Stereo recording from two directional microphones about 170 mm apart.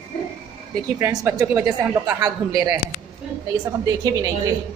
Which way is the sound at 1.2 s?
20° right (ahead or behind).